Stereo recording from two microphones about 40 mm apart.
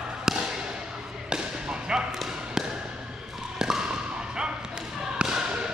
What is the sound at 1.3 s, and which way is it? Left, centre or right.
Basketball bounce, right.